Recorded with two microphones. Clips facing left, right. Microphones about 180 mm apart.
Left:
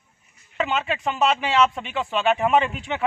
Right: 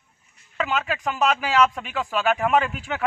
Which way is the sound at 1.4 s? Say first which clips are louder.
Even; 10° right (ahead or behind).